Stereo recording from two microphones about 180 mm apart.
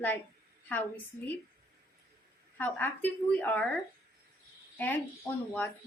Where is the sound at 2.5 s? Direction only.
10° left (ahead or behind).